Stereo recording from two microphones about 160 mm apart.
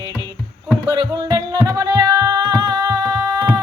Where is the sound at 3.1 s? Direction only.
25° right (ahead or behind).